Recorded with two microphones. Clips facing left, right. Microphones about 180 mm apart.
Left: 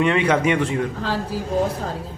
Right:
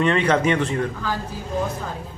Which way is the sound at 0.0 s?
10° left (ahead or behind).